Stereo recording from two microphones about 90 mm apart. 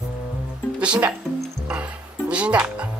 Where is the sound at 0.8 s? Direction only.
15° right (ahead or behind).